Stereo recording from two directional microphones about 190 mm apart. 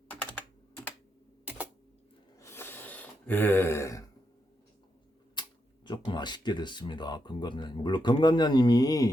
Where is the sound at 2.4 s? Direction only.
15° left (ahead or behind).